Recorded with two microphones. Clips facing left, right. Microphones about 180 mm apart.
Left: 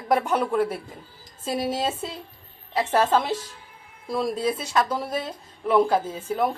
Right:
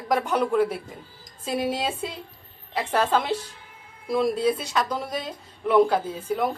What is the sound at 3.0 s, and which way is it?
A woman's voice, 5° left (ahead or behind).